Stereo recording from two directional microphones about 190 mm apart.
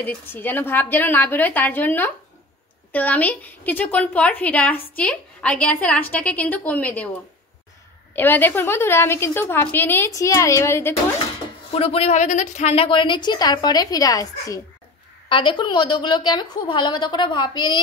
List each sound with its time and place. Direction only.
0.0 s a woman's voice: 10° left (ahead or behind)
8.2 s a woman's voice: 10° left (ahead or behind)
11.7 s a woman's voice: 30° left (ahead or behind)